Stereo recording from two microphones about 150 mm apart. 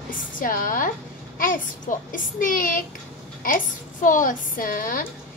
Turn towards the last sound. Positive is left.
turn(degrees=65)  # may be behind; listen again after turning